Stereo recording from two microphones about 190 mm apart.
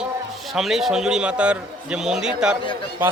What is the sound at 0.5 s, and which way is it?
A man's voice, centre (ahead or behind).